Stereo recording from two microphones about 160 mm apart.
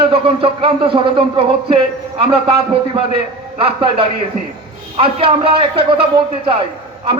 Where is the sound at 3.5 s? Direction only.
35° right (ahead or behind).